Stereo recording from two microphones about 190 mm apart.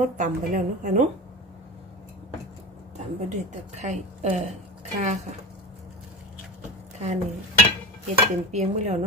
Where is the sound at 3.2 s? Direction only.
40° right (ahead or behind).